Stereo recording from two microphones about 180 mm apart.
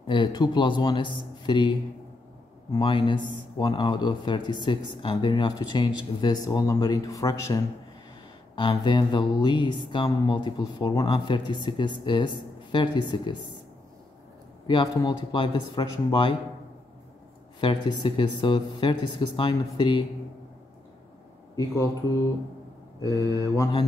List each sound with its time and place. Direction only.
0.0 s a man's voice: 25° left (ahead or behind)
2.8 s a man's voice: 25° left (ahead or behind)
14.7 s a man's voice: 25° left (ahead or behind)
17.6 s a man's voice: 25° left (ahead or behind)
22.9 s mantra: 15° left (ahead or behind)